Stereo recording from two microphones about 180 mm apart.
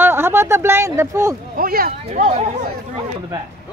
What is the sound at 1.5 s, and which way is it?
Speech, 55° right (ahead or behind).